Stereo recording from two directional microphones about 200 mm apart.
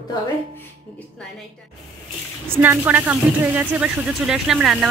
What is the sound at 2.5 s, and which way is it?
Speech, 10° right (ahead or behind).